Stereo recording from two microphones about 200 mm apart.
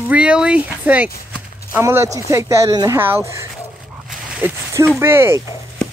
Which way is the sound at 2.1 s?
15° right (ahead or behind).